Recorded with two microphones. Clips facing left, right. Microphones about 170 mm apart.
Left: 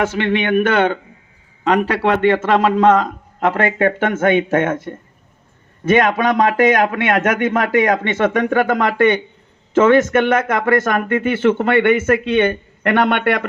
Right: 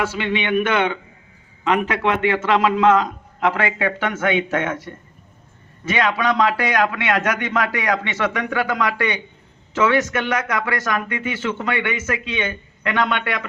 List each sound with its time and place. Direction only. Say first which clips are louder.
0.0 s a man's voice: left 5 dB; 50° left (ahead or behind)